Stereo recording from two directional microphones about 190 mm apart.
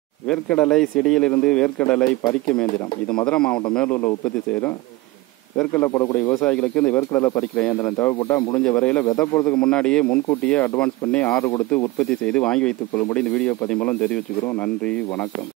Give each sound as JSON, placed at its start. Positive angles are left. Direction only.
{"t": 0.3, "sound": "speech", "side_deg": 5}
{"t": 6.4, "sound": "speech", "side_deg": 5}
{"t": 9.3, "sound": "speech", "side_deg": 15}
{"t": 9.6, "sound": "speech", "side_deg": 5}